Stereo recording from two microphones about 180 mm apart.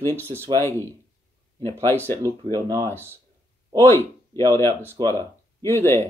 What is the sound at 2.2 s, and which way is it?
Speech, 20° right (ahead or behind).